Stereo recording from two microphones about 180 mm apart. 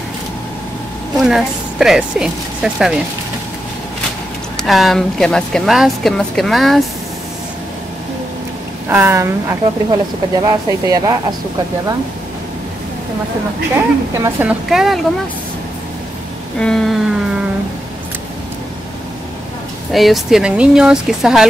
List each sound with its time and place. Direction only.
1.2 s a woman's voice: centre (ahead or behind)
4.6 s a woman's voice: centre (ahead or behind)
8.8 s speech: 15° right (ahead or behind)
13.7 s speech: 10° right (ahead or behind)
16.5 s a sound: 5° left (ahead or behind)
19.9 s a woman's voice: centre (ahead or behind)